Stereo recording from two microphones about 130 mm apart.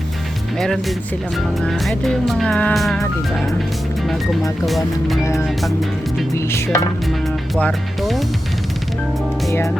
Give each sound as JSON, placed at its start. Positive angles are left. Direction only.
{"t": 0.6, "sound": "music", "side_deg": 5}
{"t": 4.0, "sound": "speech", "side_deg": 0}
{"t": 4.6, "sound": "music", "side_deg": 0}
{"t": 5.2, "sound": "music", "side_deg": 20}
{"t": 7.5, "sound": "music", "side_deg": 0}
{"t": 9.5, "sound": "music", "side_deg": 25}